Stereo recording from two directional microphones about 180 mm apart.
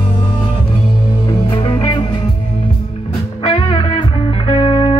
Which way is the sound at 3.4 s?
30° left (ahead or behind).